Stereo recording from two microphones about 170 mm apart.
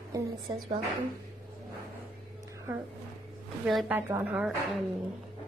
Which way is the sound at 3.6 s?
5° right (ahead or behind).